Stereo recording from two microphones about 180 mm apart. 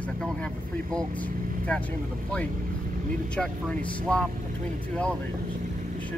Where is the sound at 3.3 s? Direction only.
5° left (ahead or behind).